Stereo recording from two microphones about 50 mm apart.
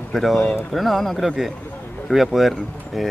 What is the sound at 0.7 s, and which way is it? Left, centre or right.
Speech, centre.